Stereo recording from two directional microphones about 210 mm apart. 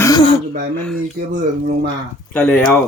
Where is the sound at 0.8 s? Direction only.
5° left (ahead or behind).